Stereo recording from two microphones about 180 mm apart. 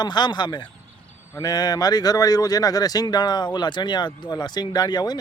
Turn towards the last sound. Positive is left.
turn(degrees=20)  # may be behind; listen again after turning